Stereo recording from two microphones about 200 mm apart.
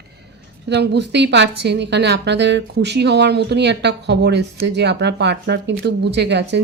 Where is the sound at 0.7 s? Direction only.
60° right (ahead or behind).